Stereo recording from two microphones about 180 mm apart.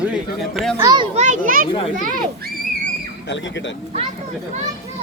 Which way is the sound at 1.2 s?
45° right (ahead or behind).